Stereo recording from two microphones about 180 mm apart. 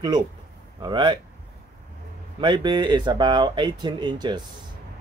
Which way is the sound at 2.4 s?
25° right (ahead or behind).